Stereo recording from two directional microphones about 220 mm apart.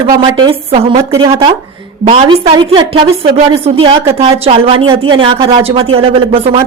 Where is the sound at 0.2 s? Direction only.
25° right (ahead or behind).